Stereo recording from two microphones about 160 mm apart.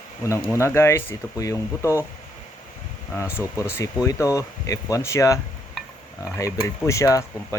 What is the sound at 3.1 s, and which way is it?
Speech, 15° left (ahead or behind).